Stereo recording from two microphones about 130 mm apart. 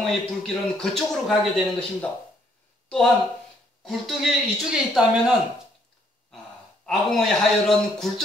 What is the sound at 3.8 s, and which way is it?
A man's voice, centre (ahead or behind).